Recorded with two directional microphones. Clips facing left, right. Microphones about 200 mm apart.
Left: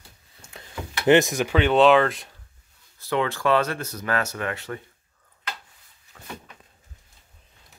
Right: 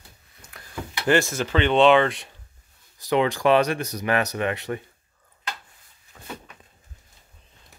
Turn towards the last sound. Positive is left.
turn(degrees=-5)  # may be behind; listen again after turning